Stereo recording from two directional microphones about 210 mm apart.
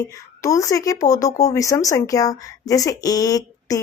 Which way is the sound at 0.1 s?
15° left (ahead or behind).